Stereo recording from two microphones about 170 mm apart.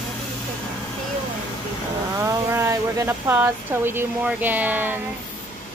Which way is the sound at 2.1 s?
20° right (ahead or behind).